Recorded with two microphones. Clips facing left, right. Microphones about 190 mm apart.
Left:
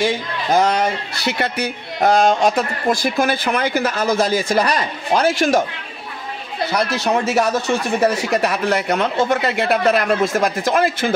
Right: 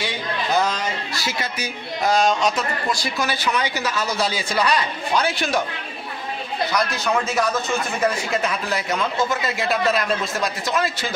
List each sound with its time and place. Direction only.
0.0 s a man's voice: 50° left (ahead or behind)
7.2 s a man's voice: 75° left (ahead or behind); by 11.1 s 55° left (ahead or behind)